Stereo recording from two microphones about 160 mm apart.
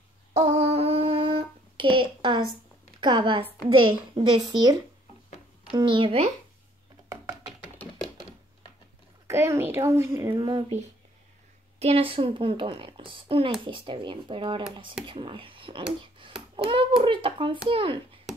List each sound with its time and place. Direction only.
0.3 s humming: 40° right (ahead or behind)
3.0 s a child's voice: 30° right (ahead or behind)
5.8 s speech: 30° right (ahead or behind)
9.3 s speech: 15° right (ahead or behind)
10.3 s a child's voice: 30° right (ahead or behind)
11.8 s a child's voice: 35° right (ahead or behind)